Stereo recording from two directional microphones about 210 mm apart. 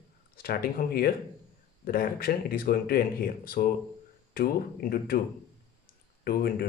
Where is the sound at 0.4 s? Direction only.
45° left (ahead or behind).